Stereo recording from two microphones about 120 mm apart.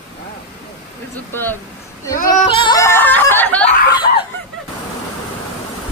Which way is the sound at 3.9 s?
40° left (ahead or behind).